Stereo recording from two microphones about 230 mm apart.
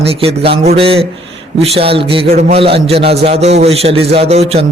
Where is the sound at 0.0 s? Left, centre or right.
Right.